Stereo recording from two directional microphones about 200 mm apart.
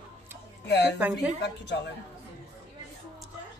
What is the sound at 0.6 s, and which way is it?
A woman's voice, 55° left (ahead or behind).